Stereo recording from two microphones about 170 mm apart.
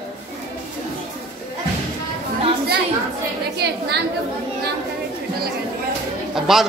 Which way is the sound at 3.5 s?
80° right.